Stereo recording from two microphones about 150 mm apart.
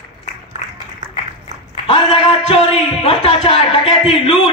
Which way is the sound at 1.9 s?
45° left (ahead or behind).